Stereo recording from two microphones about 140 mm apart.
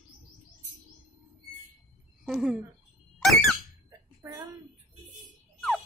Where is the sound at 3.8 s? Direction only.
20° right (ahead or behind).